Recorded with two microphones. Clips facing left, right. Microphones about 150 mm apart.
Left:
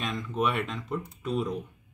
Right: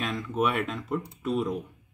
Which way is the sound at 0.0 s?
5° right (ahead or behind).